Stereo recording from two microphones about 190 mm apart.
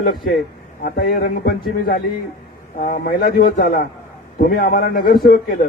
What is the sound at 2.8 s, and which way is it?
A man's voice, 45° left (ahead or behind).